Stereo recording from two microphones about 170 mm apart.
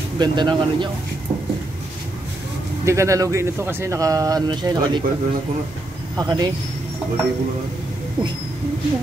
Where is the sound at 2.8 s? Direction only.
15° right (ahead or behind).